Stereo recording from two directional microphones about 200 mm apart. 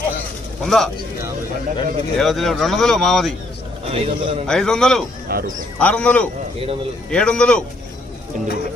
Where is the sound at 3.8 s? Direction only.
30° right (ahead or behind).